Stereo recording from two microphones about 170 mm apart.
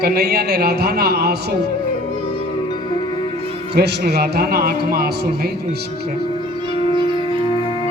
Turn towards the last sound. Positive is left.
turn(degrees=-30)  # may be behind; listen again after turning